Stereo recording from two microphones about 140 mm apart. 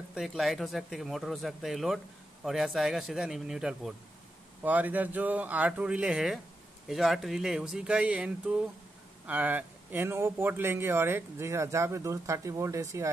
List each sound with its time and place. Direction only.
0.1 s speech: 5° right (ahead or behind); by 12.8 s 20° right (ahead or behind)